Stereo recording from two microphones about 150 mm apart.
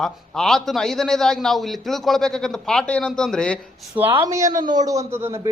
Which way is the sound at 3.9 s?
15° right (ahead or behind).